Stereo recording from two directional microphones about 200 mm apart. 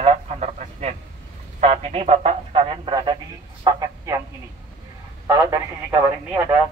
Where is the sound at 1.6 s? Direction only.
30° right (ahead or behind).